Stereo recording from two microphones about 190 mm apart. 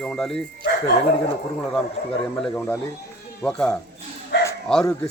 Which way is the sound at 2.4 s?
5° left (ahead or behind).